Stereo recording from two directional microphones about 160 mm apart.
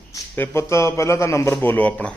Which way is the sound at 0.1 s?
15° left (ahead or behind).